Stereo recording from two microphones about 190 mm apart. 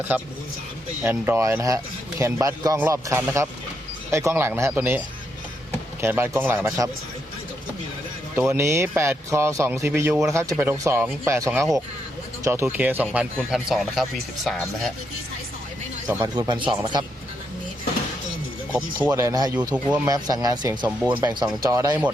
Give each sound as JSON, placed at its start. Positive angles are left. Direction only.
{"t": 1.0, "sound": "a man's voice", "side_deg": -10}
{"t": 8.4, "sound": "a man's voice", "side_deg": -15}
{"t": 16.2, "sound": "speech", "side_deg": -25}
{"t": 18.7, "sound": "a man's voice", "side_deg": -10}
{"t": 20.1, "sound": "a man's voice", "side_deg": -20}